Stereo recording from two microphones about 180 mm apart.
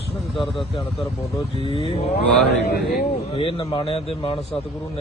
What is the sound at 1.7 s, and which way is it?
Speech, 35° left (ahead or behind).